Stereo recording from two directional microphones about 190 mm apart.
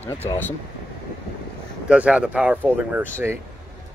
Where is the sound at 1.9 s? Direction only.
5° right (ahead or behind).